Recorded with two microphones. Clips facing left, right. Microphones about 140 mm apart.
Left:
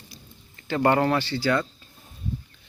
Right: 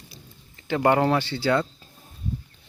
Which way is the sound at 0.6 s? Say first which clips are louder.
Right 1 dB; 15° right (ahead or behind).